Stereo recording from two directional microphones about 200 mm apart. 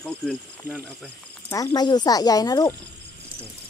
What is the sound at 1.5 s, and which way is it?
Speech, 15° left (ahead or behind).